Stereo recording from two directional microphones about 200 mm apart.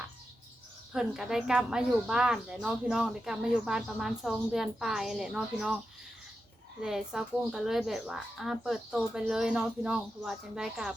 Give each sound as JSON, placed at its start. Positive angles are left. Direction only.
{"t": 0.9, "sound": "a woman's voice", "side_deg": 0}
{"t": 6.8, "sound": "a woman's voice", "side_deg": 0}